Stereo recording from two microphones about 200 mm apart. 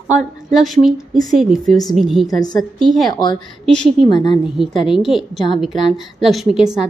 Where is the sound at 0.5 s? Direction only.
Centre (ahead or behind).